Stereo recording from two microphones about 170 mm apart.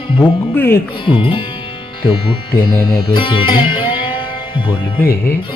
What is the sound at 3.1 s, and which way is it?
Music, 30° left (ahead or behind).